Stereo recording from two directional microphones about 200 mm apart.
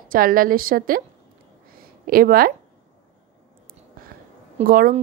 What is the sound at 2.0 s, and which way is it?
Speech, 45° right (ahead or behind).